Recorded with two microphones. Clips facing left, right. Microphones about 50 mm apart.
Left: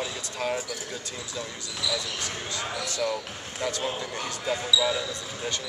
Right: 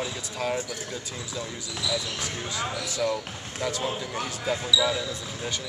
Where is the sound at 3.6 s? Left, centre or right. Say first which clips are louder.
Right 1 dB; centre.